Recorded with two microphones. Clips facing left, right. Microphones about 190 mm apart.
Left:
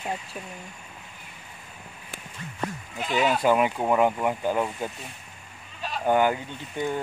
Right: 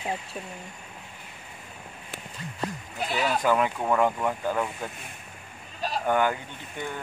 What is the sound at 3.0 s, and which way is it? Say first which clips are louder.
Speech: left 1 dB; 35° right (ahead or behind).